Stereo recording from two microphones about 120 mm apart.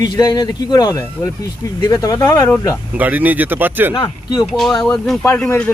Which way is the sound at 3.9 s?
35° left (ahead or behind).